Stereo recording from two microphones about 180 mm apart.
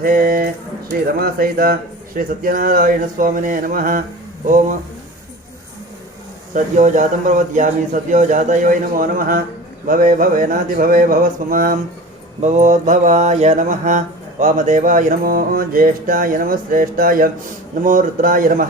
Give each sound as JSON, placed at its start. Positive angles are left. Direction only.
{"t": 0.0, "sound": "mantra", "side_deg": -55}
{"t": 6.5, "sound": "mantra", "side_deg": -45}